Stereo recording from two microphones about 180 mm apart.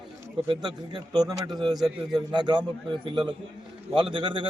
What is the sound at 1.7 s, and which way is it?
Speech, centre (ahead or behind).